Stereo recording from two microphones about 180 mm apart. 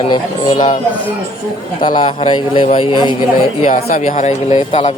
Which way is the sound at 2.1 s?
30° left (ahead or behind).